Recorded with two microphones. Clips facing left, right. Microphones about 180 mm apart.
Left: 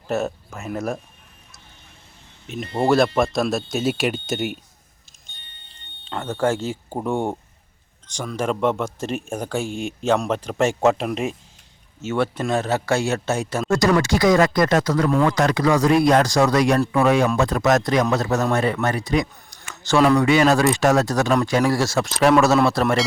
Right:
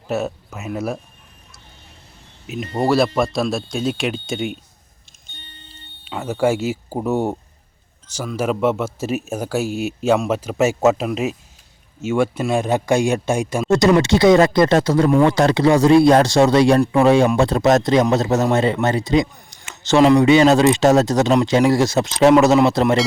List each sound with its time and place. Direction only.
0.1 s speech: centre (ahead or behind)
2.7 s speech: centre (ahead or behind)
6.1 s speech: 10° right (ahead or behind)